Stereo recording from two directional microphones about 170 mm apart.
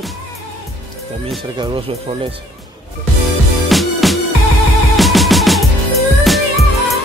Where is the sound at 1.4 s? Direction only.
30° right (ahead or behind).